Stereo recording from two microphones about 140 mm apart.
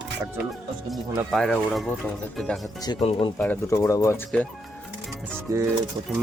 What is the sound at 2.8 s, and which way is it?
Speech, 30° left (ahead or behind).